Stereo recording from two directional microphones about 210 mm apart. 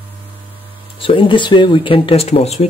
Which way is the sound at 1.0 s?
25° left (ahead or behind).